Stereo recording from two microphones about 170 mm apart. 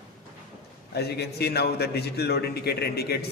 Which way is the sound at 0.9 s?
75° left (ahead or behind).